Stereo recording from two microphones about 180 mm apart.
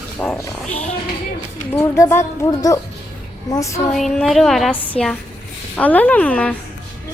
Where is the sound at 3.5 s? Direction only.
15° left (ahead or behind).